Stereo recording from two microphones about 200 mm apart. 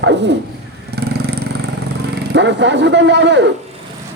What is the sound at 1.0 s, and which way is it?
Vehicle, 55° right (ahead or behind).